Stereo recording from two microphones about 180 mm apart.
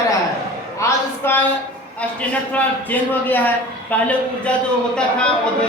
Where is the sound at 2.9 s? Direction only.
10° left (ahead or behind).